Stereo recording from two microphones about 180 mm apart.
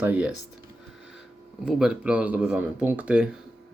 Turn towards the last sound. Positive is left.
turn(degrees=-5)  # may be behind; listen again after turning